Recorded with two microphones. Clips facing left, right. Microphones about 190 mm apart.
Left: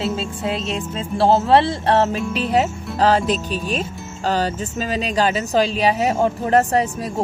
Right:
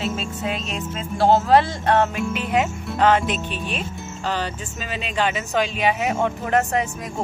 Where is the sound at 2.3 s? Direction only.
35° left (ahead or behind).